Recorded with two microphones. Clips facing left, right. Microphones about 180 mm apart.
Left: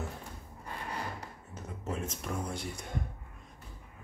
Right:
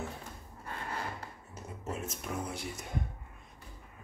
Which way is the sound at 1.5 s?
10° right (ahead or behind).